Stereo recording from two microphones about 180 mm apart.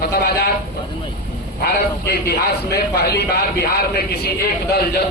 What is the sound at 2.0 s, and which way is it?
A man's voice, 60° left (ahead or behind).